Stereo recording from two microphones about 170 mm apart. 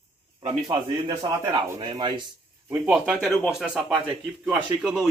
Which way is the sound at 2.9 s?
Centre (ahead or behind).